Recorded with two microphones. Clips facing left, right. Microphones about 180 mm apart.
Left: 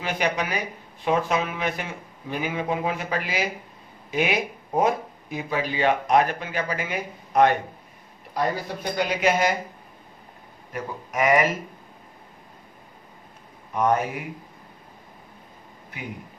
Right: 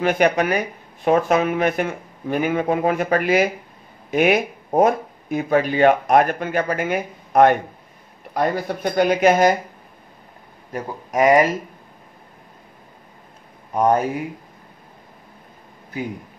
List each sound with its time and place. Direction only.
0.0 s speech: 55° right (ahead or behind)
10.7 s a man's voice: 35° right (ahead or behind)
13.7 s a man's voice: 35° right (ahead or behind)